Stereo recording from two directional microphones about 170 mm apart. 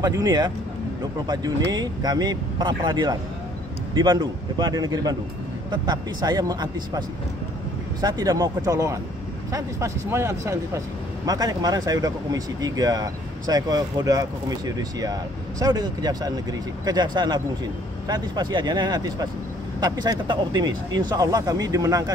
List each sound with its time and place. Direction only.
0.0 s speech: 20° right (ahead or behind)